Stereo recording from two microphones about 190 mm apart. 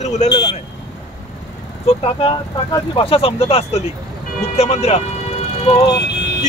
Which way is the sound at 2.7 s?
30° left (ahead or behind).